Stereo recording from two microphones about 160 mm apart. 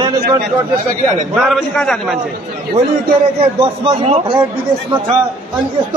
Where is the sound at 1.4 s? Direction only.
Centre (ahead or behind).